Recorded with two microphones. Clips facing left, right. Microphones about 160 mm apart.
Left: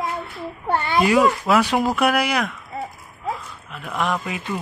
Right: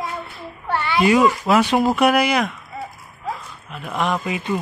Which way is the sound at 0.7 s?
45° left (ahead or behind).